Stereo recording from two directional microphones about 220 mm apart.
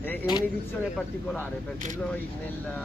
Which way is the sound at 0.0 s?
10° left (ahead or behind).